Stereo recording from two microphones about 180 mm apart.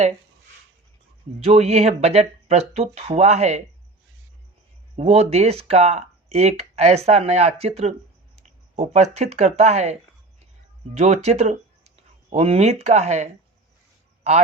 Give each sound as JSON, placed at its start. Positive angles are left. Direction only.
{"t": 1.4, "sound": "speech", "side_deg": -35}
{"t": 4.9, "sound": "speech", "side_deg": -35}